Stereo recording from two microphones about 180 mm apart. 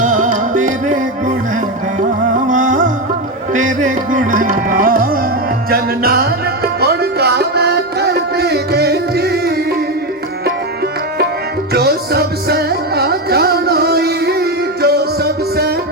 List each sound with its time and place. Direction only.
0.0 s music: 45° right (ahead or behind)
2.5 s music: 45° right (ahead or behind); by 9.4 s 65° right (ahead or behind)
11.7 s music: 65° right (ahead or behind)